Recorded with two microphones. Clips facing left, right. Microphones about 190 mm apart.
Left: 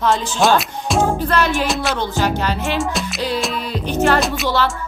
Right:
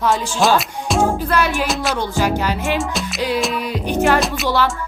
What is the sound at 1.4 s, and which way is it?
Speech, 10° right (ahead or behind).